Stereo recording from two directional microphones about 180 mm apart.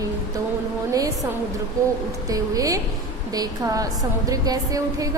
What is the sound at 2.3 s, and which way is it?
A woman's voice, 20° right (ahead or behind).